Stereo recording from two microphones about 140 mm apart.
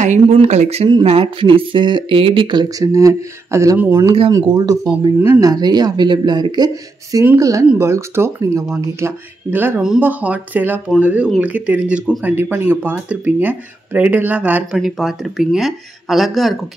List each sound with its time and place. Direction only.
0.0 s speech: 55° right (ahead or behind); by 3.9 s 15° right (ahead or behind)
4.3 s speech: 25° right (ahead or behind); by 16.5 s centre (ahead or behind)